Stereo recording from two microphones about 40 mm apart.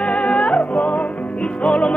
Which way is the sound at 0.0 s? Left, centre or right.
Left.